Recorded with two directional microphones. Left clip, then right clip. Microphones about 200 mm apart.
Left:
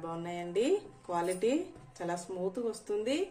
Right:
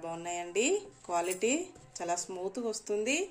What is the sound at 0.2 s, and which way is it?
Speech, 35° right (ahead or behind).